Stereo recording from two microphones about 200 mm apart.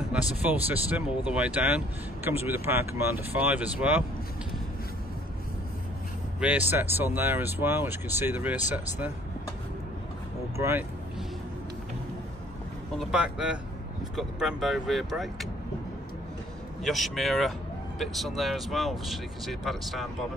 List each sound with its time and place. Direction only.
0.7 s speech: 10° right (ahead or behind)
6.4 s speech: 10° right (ahead or behind)
10.6 s speech: 10° right (ahead or behind)
12.9 s speech: centre (ahead or behind)
16.8 s speech: centre (ahead or behind)